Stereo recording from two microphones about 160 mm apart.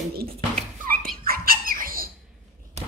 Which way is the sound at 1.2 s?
65° right (ahead or behind).